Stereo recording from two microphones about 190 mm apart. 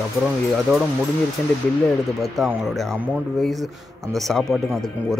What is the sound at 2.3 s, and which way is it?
Speech, centre (ahead or behind).